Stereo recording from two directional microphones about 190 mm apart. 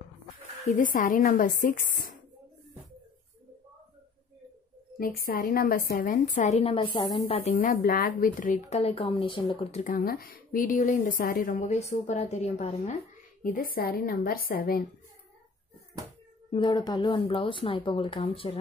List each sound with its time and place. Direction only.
0.7 s a woman's voice: 45° left (ahead or behind)
4.9 s a woman's voice: 50° left (ahead or behind); by 7.4 s 30° left (ahead or behind)
7.5 s a woman's voice: 45° left (ahead or behind)
9.9 s a woman's voice: 50° left (ahead or behind)
13.4 s a woman's voice: 50° left (ahead or behind)
16.5 s speech: 25° left (ahead or behind)